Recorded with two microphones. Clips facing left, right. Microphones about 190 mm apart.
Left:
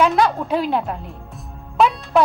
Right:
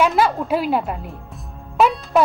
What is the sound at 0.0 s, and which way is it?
Speech, 5° right (ahead or behind).